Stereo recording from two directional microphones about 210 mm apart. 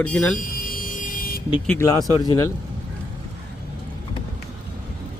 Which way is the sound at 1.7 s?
15° left (ahead or behind).